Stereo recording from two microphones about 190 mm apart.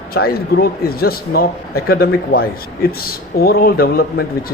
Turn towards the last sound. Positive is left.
turn(degrees=55)  # may be behind; listen again after turning